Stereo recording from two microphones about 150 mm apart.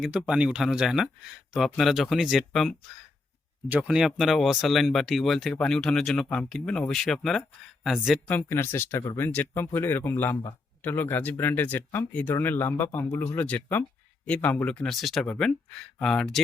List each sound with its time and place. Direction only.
0.0 s speech: 5° right (ahead or behind)
8.3 s speech: 15° left (ahead or behind)